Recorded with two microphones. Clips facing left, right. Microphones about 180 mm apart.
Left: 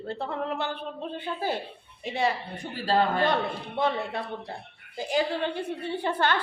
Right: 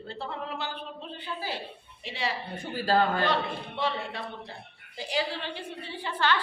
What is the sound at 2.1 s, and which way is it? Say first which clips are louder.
Speech: left 6 dB; 50° left (ahead or behind).